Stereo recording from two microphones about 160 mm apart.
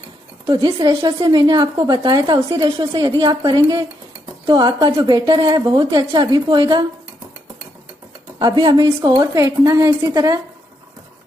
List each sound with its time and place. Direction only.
0.5 s a woman's voice: 25° right (ahead or behind)
8.4 s a woman's voice: 30° right (ahead or behind)